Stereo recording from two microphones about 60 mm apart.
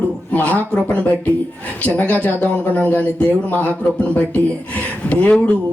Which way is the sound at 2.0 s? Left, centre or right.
Left.